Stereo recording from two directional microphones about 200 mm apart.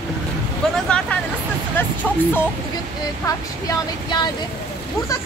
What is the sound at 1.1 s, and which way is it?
Speech, 10° left (ahead or behind).